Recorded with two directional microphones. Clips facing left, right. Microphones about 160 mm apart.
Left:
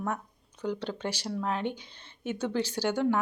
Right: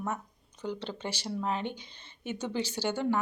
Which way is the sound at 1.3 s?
5° right (ahead or behind).